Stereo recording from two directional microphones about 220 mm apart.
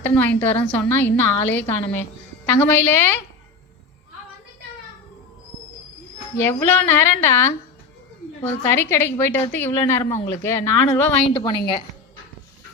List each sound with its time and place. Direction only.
0.0 s a woman's voice: 10° left (ahead or behind)
6.3 s a woman's voice: 10° left (ahead or behind)
8.6 s a woman's voice: 10° left (ahead or behind)